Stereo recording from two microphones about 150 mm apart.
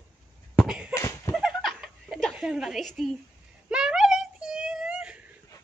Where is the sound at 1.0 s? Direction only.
20° left (ahead or behind).